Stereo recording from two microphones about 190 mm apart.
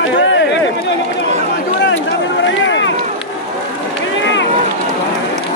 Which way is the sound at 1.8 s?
75° left (ahead or behind).